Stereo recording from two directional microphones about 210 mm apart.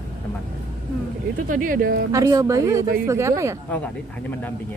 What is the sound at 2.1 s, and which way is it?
A woman's voice, 15° right (ahead or behind).